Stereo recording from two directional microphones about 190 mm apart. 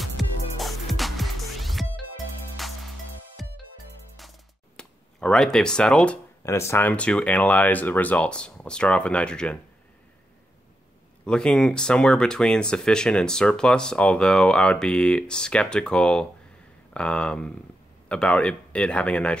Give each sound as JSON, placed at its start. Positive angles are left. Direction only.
{"t": 0.0, "sound": "music", "side_deg": 0}
{"t": 4.2, "sound": "a sound", "side_deg": 0}
{"t": 6.4, "sound": "speech", "side_deg": 15}
{"t": 11.2, "sound": "speech", "side_deg": 5}